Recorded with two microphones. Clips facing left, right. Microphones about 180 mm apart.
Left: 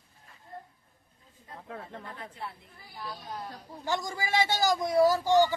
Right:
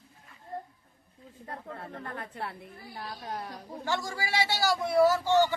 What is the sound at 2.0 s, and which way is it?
A woman's voice, 60° right (ahead or behind).